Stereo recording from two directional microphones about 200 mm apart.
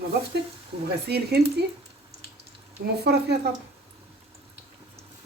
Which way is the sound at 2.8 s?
55° right (ahead or behind).